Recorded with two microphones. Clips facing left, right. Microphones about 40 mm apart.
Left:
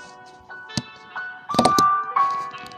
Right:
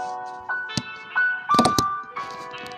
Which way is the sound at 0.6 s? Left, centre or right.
Right.